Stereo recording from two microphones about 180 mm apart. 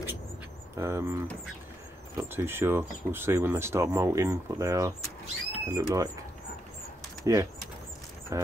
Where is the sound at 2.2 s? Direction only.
10° right (ahead or behind).